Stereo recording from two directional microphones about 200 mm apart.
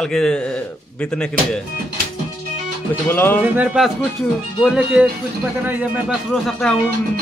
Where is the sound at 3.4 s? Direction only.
5° right (ahead or behind).